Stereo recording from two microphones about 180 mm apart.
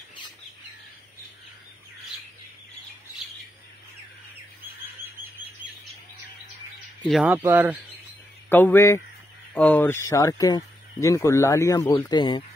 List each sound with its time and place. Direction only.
7.2 s speech: 10° right (ahead or behind)
8.5 s speech: 10° left (ahead or behind)